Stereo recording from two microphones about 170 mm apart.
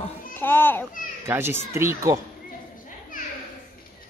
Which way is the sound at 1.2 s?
15° right (ahead or behind).